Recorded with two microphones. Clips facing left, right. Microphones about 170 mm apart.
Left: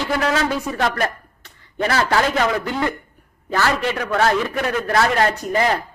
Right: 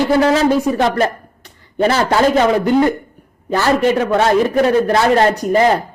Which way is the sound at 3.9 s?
25° right (ahead or behind).